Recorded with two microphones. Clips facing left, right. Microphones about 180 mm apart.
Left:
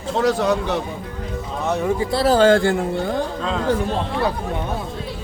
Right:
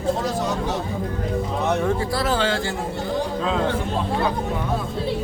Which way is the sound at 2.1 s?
35° left (ahead or behind).